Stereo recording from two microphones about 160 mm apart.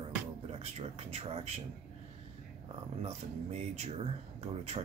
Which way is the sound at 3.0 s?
45° right (ahead or behind).